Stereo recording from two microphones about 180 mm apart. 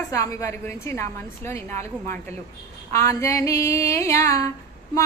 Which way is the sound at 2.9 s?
15° left (ahead or behind).